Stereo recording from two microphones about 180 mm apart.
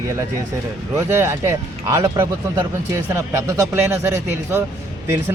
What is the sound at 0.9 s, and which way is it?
Speech, 15° right (ahead or behind).